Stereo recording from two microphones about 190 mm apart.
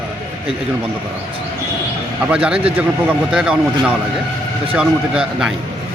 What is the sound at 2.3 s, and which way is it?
Speech, 5° right (ahead or behind).